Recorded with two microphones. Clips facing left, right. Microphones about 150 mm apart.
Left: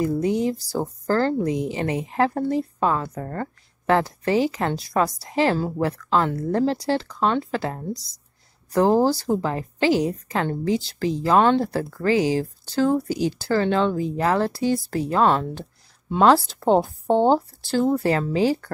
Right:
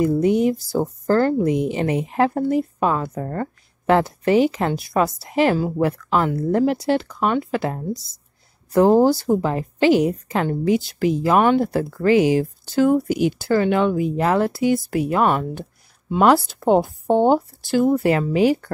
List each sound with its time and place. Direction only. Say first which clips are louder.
0.2 s a woman's voice: right 5 dB; 20° right (ahead or behind)